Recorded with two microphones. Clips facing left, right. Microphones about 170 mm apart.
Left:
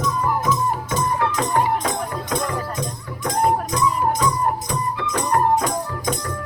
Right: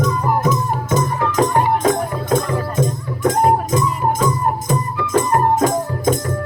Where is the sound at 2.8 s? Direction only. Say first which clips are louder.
Right 9 dB; 50° right (ahead or behind).